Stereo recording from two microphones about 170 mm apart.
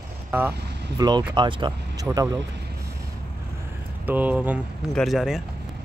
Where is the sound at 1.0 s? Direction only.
25° right (ahead or behind).